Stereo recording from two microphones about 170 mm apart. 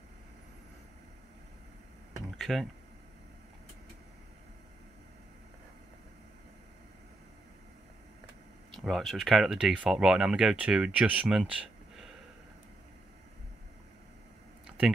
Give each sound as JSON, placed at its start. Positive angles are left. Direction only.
{"t": 2.3, "sound": "speech", "side_deg": 0}
{"t": 8.7, "sound": "speech", "side_deg": 0}